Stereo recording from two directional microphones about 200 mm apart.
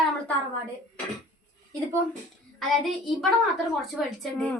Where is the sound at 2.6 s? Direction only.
Centre (ahead or behind).